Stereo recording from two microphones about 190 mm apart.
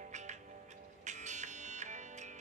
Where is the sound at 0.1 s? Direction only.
40° right (ahead or behind).